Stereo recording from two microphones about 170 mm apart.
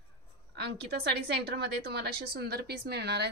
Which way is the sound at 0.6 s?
80° right.